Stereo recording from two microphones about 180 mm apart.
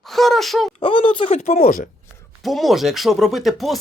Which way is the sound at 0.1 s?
Centre (ahead or behind).